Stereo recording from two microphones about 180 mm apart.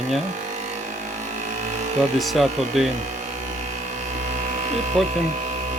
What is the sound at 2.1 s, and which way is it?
Speech, centre (ahead or behind).